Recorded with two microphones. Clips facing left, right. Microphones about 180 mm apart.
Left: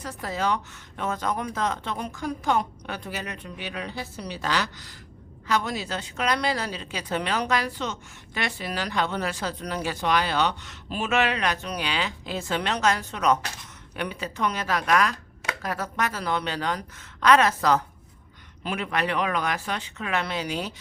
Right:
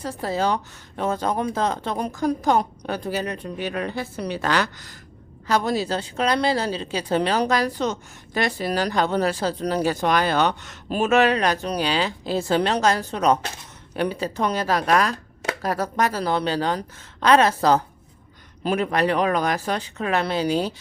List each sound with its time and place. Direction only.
0.0 s a woman's voice: 30° right (ahead or behind); by 4.9 s 50° right (ahead or behind)
5.5 s a woman's voice: 35° right (ahead or behind)